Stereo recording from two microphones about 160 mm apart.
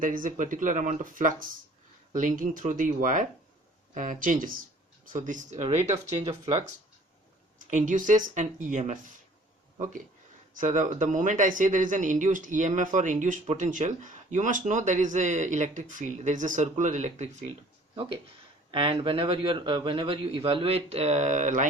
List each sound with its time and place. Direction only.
0.0 s speech: 55° right (ahead or behind)
5.9 s speech: 25° right (ahead or behind)
7.7 s speech: 50° right (ahead or behind)
10.5 s speech: 50° right (ahead or behind)
17.9 s a man's voice: 35° right (ahead or behind); by 21.7 s 50° right (ahead or behind)